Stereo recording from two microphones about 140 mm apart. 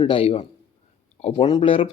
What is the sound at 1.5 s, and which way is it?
Speech, 40° left (ahead or behind).